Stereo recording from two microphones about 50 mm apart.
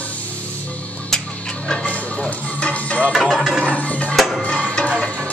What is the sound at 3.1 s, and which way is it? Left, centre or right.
Music, centre.